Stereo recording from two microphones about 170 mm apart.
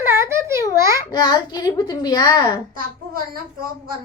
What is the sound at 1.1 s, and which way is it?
A child's voice, 25° left (ahead or behind).